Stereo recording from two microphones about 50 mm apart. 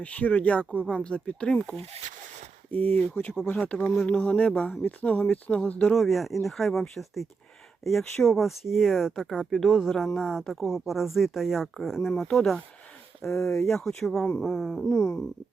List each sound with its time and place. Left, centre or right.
0.0 s speech: left
2.7 s speech: left
5.9 s speech: centre
13.6 s a sound: centre